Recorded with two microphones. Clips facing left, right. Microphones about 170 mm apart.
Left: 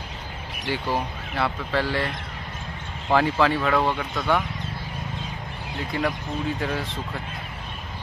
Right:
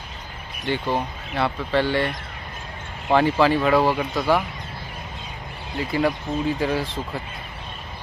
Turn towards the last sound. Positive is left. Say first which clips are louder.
# right 4 dB
turn(degrees=0)  # may be behind; listen again after turning